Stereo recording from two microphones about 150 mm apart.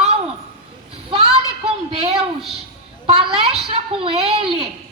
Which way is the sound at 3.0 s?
40° right (ahead or behind).